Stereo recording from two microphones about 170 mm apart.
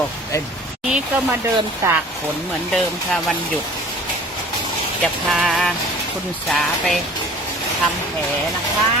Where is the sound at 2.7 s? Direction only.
Centre (ahead or behind).